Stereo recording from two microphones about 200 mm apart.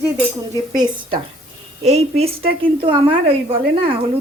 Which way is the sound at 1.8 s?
30° right (ahead or behind).